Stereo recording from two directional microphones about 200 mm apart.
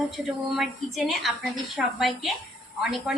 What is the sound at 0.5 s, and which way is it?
A woman's voice, centre (ahead or behind).